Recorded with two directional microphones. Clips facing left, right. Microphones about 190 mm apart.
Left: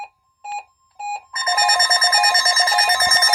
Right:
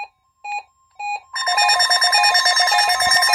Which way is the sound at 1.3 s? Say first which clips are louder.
Even; 25° left (ahead or behind).